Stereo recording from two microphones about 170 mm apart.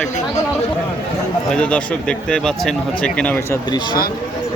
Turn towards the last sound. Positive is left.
turn(degrees=25)  # may be behind; listen again after turning